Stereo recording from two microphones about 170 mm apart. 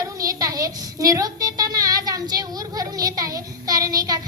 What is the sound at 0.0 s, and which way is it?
A woman's voice, 20° right (ahead or behind).